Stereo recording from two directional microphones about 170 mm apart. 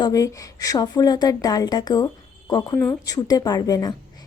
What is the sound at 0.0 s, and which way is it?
Speech, 20° left (ahead or behind).